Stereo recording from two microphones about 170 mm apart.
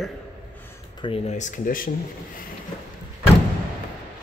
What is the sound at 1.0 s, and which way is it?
Speech, 35° left (ahead or behind).